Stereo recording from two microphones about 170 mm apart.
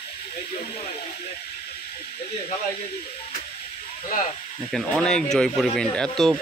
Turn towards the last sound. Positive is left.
turn(degrees=5)  # may be behind; listen again after turning